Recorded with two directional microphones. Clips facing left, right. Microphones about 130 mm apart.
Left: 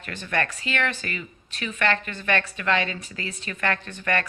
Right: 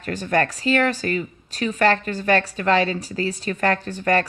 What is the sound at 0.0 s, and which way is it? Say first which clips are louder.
Speech: right 6 dB; 40° right (ahead or behind).